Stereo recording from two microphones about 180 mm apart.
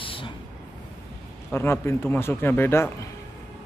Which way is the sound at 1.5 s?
15° left (ahead or behind).